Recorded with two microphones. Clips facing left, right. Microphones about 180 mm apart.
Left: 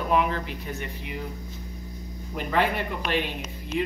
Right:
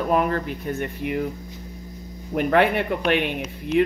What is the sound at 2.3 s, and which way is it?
Speech, 60° right (ahead or behind).